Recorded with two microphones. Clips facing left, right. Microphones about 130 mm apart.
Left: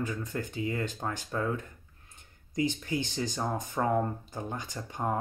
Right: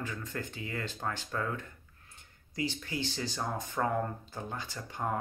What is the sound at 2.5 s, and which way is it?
Speech, 20° left (ahead or behind).